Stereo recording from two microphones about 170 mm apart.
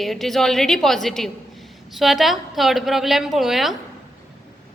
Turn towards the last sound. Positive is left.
turn(degrees=0)  # may be behind; listen again after turning